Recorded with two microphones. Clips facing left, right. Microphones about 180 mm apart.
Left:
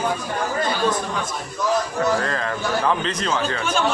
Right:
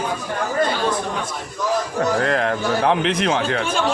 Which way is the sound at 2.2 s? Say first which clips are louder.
Right 5 dB; 65° right (ahead or behind).